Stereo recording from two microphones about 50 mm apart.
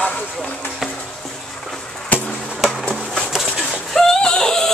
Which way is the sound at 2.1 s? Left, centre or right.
Left.